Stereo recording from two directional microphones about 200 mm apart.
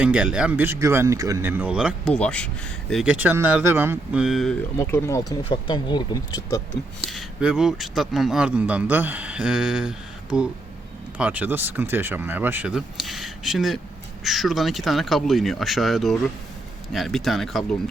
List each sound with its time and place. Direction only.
0.0 s speech: 5° right (ahead or behind)
2.1 s speech: 5° left (ahead or behind)
2.9 s speech: 5° right (ahead or behind)
4.8 s speech: 15° left (ahead or behind)
7.0 s speech: centre (ahead or behind)